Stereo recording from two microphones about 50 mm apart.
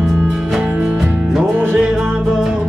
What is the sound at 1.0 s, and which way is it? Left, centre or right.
Music, centre.